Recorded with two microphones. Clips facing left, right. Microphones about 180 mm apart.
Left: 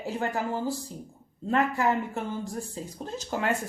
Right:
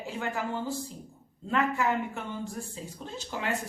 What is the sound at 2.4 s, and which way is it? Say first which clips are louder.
Speech: left 3 dB; 40° left (ahead or behind).